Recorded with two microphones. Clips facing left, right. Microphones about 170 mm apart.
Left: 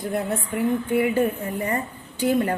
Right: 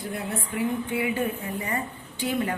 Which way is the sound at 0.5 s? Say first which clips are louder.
Left 5 dB; 50° left (ahead or behind).